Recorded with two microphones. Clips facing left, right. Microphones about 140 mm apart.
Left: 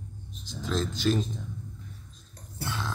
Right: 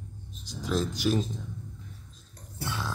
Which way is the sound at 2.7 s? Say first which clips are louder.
Even; 10° right (ahead or behind).